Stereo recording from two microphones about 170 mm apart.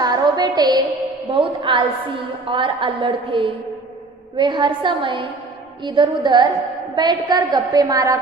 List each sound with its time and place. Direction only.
0.0 s music: 25° right (ahead or behind)
1.3 s a woman's voice: 30° right (ahead or behind)